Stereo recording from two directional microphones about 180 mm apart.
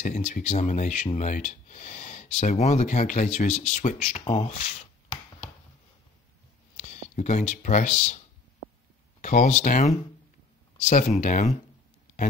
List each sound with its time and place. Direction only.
0.0 s speech: 45° left (ahead or behind)
4.2 s speech: 25° left (ahead or behind)
4.5 s speech: 40° left (ahead or behind)
6.8 s speech: 40° left (ahead or behind)
9.2 s speech: 45° left (ahead or behind)